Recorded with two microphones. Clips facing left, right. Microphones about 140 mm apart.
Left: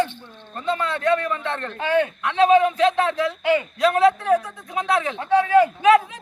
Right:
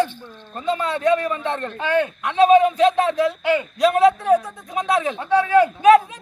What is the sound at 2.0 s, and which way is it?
Speech, 15° right (ahead or behind).